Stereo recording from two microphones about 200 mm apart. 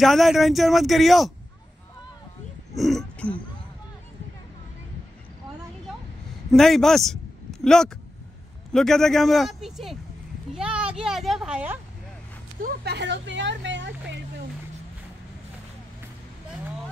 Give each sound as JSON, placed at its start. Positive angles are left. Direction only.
{"t": 0.0, "sound": "speech", "side_deg": 0}
{"t": 2.7, "sound": "speech", "side_deg": 0}
{"t": 6.5, "sound": "a man's voice", "side_deg": 0}
{"t": 12.6, "sound": "speech", "side_deg": -55}